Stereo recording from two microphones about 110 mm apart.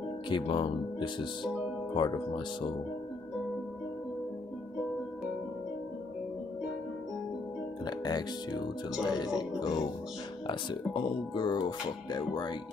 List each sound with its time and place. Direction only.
0.3 s speech: 50° left (ahead or behind)
7.8 s speech: 40° left (ahead or behind)